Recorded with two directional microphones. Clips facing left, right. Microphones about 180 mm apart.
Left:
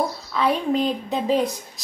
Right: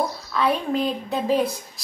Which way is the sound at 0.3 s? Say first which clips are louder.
Left 1 dB; 20° left (ahead or behind).